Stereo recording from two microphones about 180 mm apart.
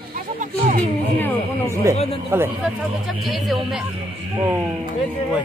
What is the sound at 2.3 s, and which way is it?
Speech, 10° right (ahead or behind).